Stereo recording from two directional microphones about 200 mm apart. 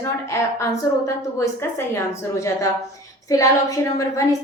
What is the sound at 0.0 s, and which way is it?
A woman's voice, 15° left (ahead or behind).